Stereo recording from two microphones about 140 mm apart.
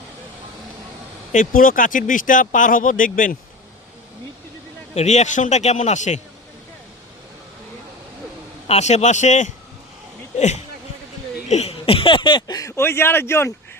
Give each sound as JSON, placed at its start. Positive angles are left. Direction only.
{"t": 1.3, "sound": "speech", "side_deg": 70}
{"t": 4.9, "sound": "a man's voice", "side_deg": 55}
{"t": 8.6, "sound": "a man's voice", "side_deg": 50}